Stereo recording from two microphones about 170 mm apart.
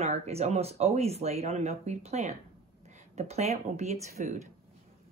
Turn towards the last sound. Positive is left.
turn(degrees=-40)  # may be behind; listen again after turning